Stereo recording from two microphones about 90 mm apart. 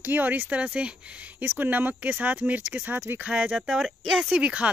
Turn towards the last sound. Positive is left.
turn(degrees=-15)  # may be behind; listen again after turning